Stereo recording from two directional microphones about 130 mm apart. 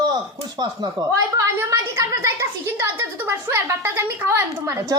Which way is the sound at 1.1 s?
25° right (ahead or behind).